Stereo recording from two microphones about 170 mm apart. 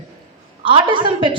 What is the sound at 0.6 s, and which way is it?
Speech, 30° right (ahead or behind).